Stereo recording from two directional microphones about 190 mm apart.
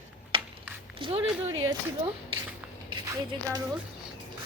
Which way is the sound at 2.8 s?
20° right (ahead or behind).